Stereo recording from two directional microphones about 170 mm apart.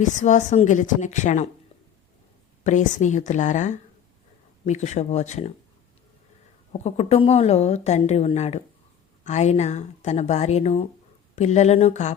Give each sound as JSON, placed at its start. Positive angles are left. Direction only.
{"t": 0.0, "sound": "a woman's voice", "side_deg": 45}
{"t": 2.6, "sound": "a woman's voice", "side_deg": 45}
{"t": 6.7, "sound": "a woman's voice", "side_deg": 35}